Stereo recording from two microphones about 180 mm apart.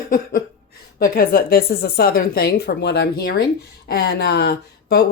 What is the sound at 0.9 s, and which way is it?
Speech, 55° left (ahead or behind).